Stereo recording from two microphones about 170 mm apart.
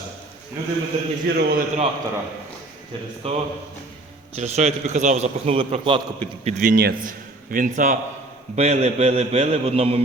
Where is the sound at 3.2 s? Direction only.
35° right (ahead or behind).